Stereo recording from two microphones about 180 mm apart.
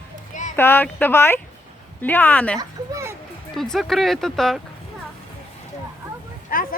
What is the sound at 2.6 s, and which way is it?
Speech, 15° right (ahead or behind).